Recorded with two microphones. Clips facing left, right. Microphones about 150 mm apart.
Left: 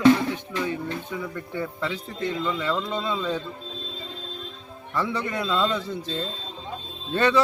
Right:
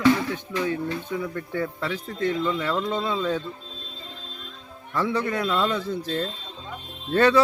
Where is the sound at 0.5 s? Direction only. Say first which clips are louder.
Right 2 dB; 20° left (ahead or behind).